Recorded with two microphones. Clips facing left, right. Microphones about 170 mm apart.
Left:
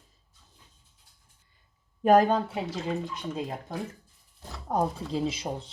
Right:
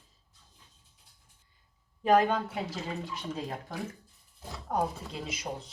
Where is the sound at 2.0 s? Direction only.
45° left (ahead or behind).